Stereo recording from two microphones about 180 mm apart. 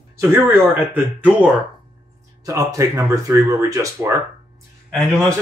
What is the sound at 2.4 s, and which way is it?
Speech, 20° right (ahead or behind).